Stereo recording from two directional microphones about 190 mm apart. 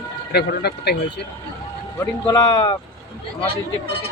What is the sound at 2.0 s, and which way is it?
Speech, 15° left (ahead or behind).